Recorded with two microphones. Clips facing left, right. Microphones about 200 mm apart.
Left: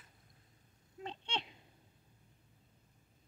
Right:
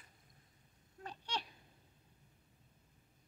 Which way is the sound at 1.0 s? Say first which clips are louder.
Left 2 dB; 25° left (ahead or behind).